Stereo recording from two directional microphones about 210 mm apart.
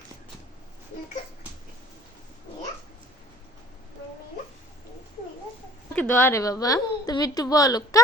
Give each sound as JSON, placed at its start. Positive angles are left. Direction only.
{"t": 6.0, "sound": "a woman's voice", "side_deg": 5}